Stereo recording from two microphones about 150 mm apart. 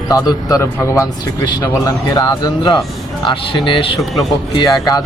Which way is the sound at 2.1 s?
25° left (ahead or behind).